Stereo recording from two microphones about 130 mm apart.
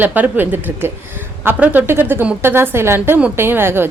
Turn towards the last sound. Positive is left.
turn(degrees=-15)  # may be behind; listen again after turning